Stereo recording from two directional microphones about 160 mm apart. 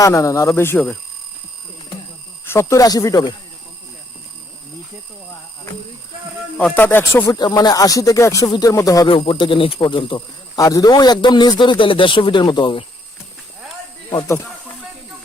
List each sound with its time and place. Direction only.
0.0 s a man's voice: 20° left (ahead or behind)
2.4 s a man's voice: 15° left (ahead or behind)
6.6 s a man's voice: 10° left (ahead or behind)
9.0 s a man's voice: 35° left (ahead or behind)